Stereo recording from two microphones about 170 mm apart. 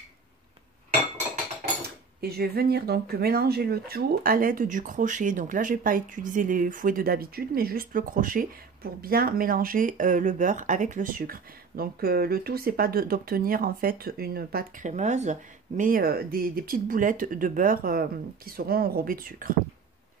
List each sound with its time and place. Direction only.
2.2 s speech: 65° right (ahead or behind)